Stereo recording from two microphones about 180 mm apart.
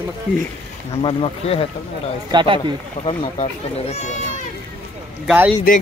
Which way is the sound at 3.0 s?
30° left (ahead or behind).